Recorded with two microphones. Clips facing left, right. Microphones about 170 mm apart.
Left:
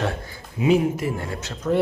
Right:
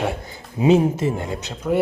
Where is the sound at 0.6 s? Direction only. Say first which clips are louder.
Right 3 dB; 25° right (ahead or behind).